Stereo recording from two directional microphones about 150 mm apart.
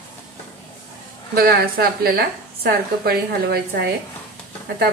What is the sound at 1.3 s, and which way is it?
A woman's voice, 85° right.